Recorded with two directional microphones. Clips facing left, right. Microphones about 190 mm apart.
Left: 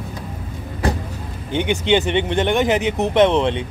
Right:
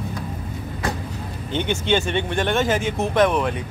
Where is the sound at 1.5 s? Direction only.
15° left (ahead or behind).